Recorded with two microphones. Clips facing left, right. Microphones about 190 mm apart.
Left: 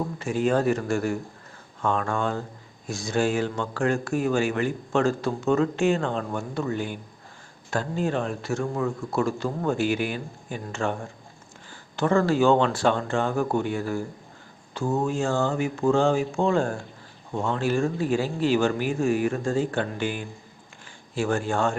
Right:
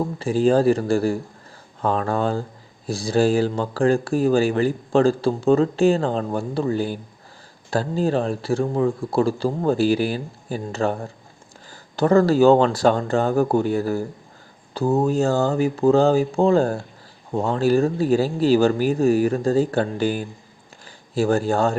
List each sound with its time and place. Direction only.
0.0 s speech: 30° right (ahead or behind)